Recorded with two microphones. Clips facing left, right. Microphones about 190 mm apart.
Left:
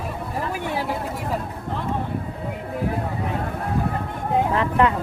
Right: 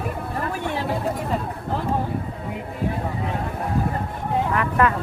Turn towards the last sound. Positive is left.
turn(degrees=25)  # may be behind; listen again after turning